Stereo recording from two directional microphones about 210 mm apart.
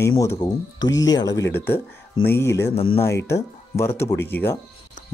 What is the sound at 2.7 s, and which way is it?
Speech, 30° left (ahead or behind).